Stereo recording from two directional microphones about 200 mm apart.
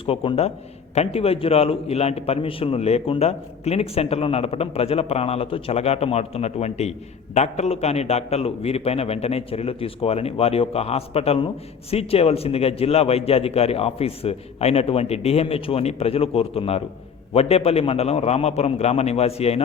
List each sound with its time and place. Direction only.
0.0 s a man's voice: 25° left (ahead or behind)